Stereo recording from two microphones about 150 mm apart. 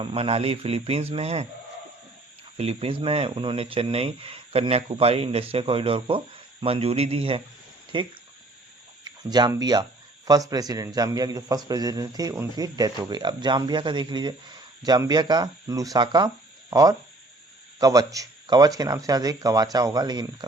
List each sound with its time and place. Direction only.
0.0 s speech: 40° right (ahead or behind)
2.6 s a man's voice: 40° right (ahead or behind)